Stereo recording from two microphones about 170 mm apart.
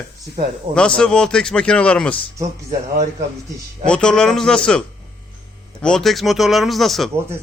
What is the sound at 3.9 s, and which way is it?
Speech, 5° left (ahead or behind).